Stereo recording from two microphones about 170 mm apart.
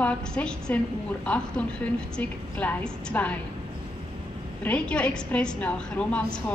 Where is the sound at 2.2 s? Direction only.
10° left (ahead or behind).